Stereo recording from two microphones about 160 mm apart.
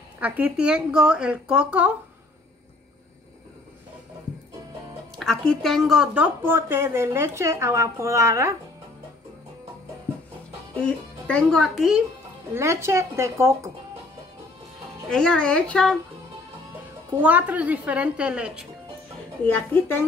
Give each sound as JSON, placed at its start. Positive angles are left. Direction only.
{"t": 0.2, "sound": "a woman's voice", "side_deg": -10}
{"t": 5.5, "sound": "speech", "side_deg": 0}
{"t": 6.4, "sound": "a woman's voice", "side_deg": -15}
{"t": 11.2, "sound": "speech", "side_deg": 5}
{"t": 12.5, "sound": "a woman's voice", "side_deg": -15}
{"t": 15.0, "sound": "speech", "side_deg": 5}
{"t": 17.2, "sound": "a woman's voice", "side_deg": -10}
{"t": 19.4, "sound": "a woman's voice", "side_deg": 15}